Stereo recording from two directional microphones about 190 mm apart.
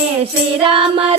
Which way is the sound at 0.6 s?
30° right (ahead or behind).